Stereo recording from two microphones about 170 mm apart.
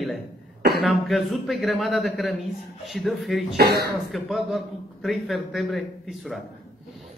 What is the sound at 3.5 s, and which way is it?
Speech, 70° right (ahead or behind).